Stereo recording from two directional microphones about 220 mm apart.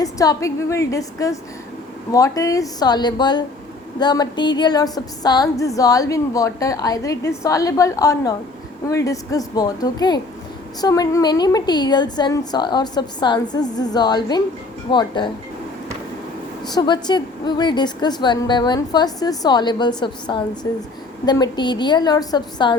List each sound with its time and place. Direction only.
0.0 s a woman's voice: 15° left (ahead or behind)
16.6 s a woman's voice: 20° left (ahead or behind)